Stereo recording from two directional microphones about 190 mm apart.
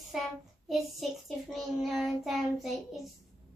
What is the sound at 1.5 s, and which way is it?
Child singing, centre (ahead or behind).